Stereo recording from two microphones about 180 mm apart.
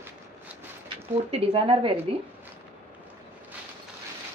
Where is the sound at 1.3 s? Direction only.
30° right (ahead or behind).